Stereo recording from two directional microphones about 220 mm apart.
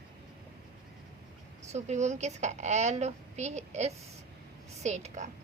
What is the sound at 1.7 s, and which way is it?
A woman's voice, 30° right (ahead or behind).